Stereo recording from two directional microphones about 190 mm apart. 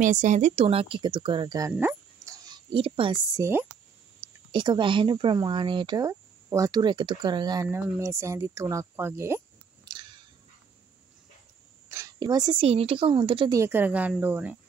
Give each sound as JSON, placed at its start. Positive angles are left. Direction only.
{"t": 0.0, "sound": "speech", "side_deg": -40}
{"t": 1.7, "sound": "dog", "side_deg": -10}
{"t": 3.3, "sound": "speech", "side_deg": -15}
{"t": 4.5, "sound": "speech", "side_deg": -25}
{"t": 9.8, "sound": "a sound", "side_deg": -25}
{"t": 11.9, "sound": "a woman's voice", "side_deg": -20}
{"t": 13.6, "sound": "speech", "side_deg": -10}